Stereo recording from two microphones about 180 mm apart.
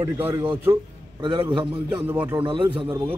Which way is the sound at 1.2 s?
25° right (ahead or behind).